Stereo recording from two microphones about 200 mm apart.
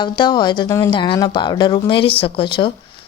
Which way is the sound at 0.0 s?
20° left (ahead or behind).